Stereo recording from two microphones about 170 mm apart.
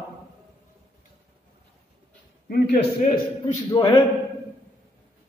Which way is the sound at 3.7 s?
15° left (ahead or behind).